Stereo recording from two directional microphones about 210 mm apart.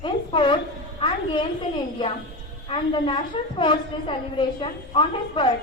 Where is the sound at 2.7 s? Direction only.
25° left (ahead or behind).